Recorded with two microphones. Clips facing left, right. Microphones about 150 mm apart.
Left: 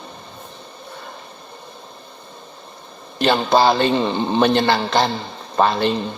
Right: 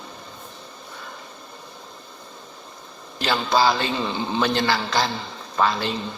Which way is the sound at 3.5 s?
55° left (ahead or behind).